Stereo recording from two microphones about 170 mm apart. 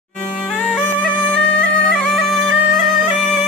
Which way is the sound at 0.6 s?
10° left (ahead or behind).